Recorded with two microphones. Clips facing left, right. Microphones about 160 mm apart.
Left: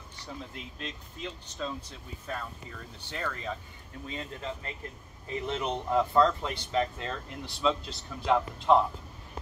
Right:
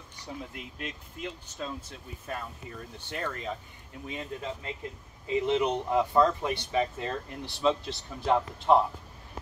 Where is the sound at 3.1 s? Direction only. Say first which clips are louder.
Right 1 dB; 10° right (ahead or behind).